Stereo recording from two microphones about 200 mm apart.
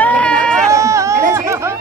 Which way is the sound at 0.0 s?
5° left (ahead or behind).